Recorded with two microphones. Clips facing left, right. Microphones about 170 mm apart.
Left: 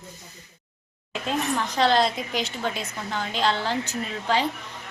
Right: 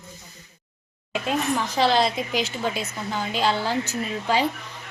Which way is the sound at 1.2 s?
5° right (ahead or behind).